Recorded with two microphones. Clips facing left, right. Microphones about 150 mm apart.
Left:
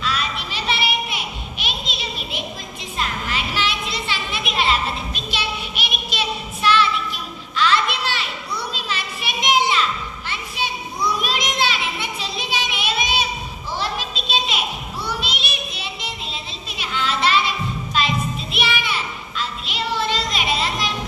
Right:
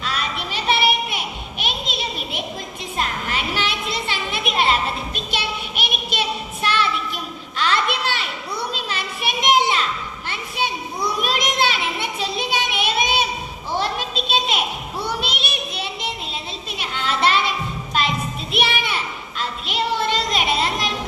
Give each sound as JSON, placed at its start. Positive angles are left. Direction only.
{"t": 0.0, "sound": "a sound", "side_deg": -50}
{"t": 11.2, "sound": "child singing", "side_deg": -55}
{"t": 13.7, "sound": "children playing", "side_deg": -55}
{"t": 15.0, "sound": "child singing", "side_deg": -55}
{"t": 16.7, "sound": "children playing", "side_deg": -55}
{"t": 18.5, "sound": "music", "side_deg": -55}
{"t": 19.4, "sound": "children playing", "side_deg": -55}